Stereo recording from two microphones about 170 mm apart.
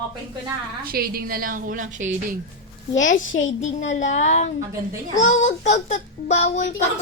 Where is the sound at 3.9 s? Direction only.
45° left (ahead or behind).